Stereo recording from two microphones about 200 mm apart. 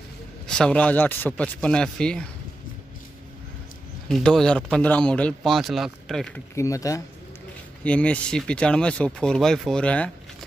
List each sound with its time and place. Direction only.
0.5 s speech: 5° left (ahead or behind)
4.1 s speech: 5° left (ahead or behind)
6.5 s speech: 15° left (ahead or behind)